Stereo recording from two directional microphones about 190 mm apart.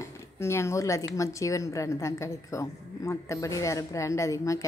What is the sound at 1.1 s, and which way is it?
A woman's voice, 15° left (ahead or behind).